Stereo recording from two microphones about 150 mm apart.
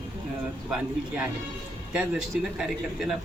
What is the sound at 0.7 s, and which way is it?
A man's voice, 5° right (ahead or behind).